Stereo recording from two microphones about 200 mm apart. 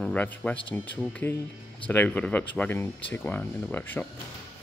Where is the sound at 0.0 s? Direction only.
5° left (ahead or behind).